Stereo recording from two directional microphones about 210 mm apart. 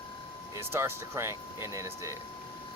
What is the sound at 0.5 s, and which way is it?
Speech, 10° right (ahead or behind).